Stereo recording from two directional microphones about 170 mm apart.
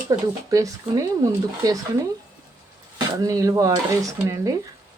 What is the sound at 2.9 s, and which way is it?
Speech, 20° right (ahead or behind).